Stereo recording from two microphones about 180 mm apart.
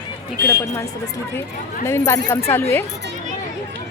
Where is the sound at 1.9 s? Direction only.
15° left (ahead or behind).